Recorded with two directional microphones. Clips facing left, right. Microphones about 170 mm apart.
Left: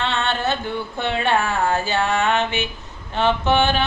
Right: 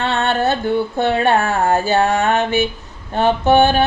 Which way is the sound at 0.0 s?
40° right (ahead or behind).